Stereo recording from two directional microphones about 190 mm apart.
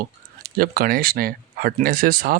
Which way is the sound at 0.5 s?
50° right (ahead or behind).